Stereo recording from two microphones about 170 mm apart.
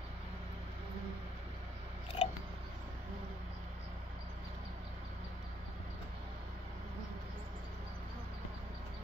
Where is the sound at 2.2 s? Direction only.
35° left (ahead or behind).